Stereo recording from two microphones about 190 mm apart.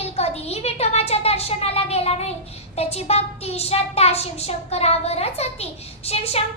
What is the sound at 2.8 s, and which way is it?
A child's voice, 35° left (ahead or behind).